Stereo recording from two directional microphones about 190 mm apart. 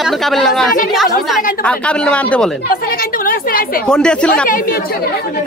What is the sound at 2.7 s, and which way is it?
A woman's voice, 50° left (ahead or behind).